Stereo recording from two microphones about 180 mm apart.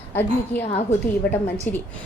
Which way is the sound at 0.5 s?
10° left (ahead or behind).